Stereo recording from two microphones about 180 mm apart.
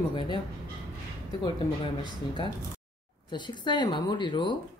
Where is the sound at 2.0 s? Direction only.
25° left (ahead or behind).